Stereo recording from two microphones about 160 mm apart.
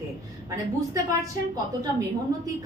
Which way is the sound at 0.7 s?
20° right (ahead or behind).